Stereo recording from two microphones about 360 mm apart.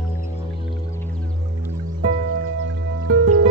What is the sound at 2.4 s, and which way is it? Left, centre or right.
Music, right.